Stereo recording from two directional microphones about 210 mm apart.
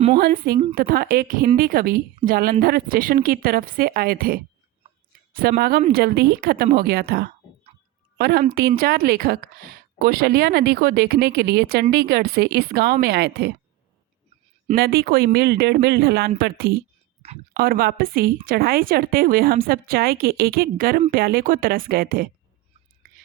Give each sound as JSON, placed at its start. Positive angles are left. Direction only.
{"t": 0.2, "sound": "a woman's voice", "side_deg": -45}
{"t": 14.8, "sound": "a woman's voice", "side_deg": -50}